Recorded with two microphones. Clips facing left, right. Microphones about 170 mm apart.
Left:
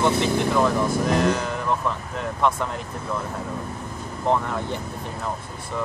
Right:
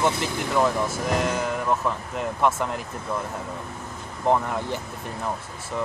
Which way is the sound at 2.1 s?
5° right (ahead or behind).